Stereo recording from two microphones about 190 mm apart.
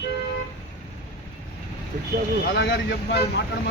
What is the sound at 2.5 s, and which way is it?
Speech, 65° left (ahead or behind).